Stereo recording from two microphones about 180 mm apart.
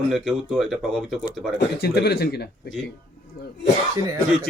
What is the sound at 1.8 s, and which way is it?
Speech, 65° left (ahead or behind).